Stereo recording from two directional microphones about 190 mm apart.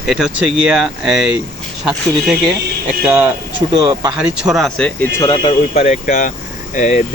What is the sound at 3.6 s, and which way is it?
Speech, 25° right (ahead or behind).